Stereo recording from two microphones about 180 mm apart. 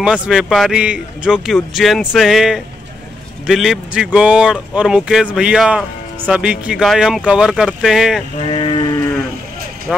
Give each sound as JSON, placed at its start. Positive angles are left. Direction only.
{"t": 0.0, "sound": "speech", "side_deg": -5}
{"t": 8.4, "sound": "sheep", "side_deg": 30}
{"t": 9.9, "sound": "speech", "side_deg": -5}